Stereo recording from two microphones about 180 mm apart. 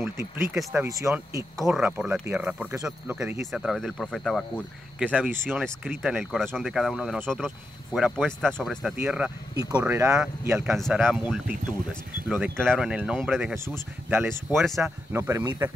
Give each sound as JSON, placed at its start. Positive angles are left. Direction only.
{"t": 0.0, "sound": "speech", "side_deg": -15}
{"t": 0.6, "sound": "speech", "side_deg": 0}
{"t": 0.8, "sound": "speech", "side_deg": -15}
{"t": 1.6, "sound": "speech", "side_deg": -5}
{"t": 14.0, "sound": "speech", "side_deg": -10}
{"t": 14.5, "sound": "speech", "side_deg": 0}
{"t": 15.1, "sound": "speech", "side_deg": -15}